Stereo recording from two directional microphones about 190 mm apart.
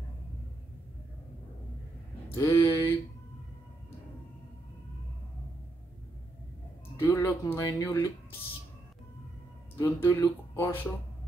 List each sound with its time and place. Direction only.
2.3 s speech: 15° left (ahead or behind)
7.0 s speech: 15° left (ahead or behind)
9.8 s speech: 15° left (ahead or behind)